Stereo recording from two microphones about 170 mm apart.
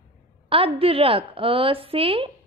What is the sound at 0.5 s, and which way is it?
A woman's voice, 35° right (ahead or behind).